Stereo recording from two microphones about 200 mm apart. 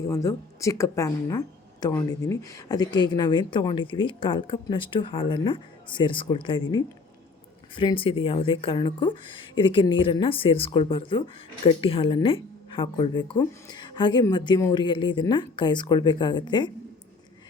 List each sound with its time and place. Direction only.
0.1 s speech: 15° left (ahead or behind)